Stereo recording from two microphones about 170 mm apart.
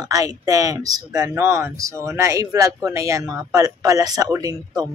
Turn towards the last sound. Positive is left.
turn(degrees=-20)  # may be behind; listen again after turning